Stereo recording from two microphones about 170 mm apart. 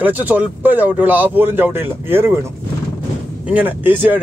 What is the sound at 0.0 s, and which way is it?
Speech, 10° right (ahead or behind).